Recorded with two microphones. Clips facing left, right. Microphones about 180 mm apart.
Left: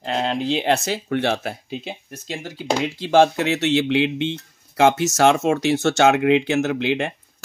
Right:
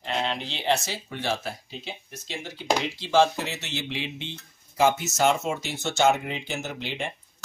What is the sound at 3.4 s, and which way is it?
Speech, 80° left.